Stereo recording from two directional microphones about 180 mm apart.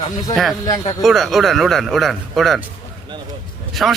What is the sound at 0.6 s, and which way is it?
Speech, 20° left (ahead or behind).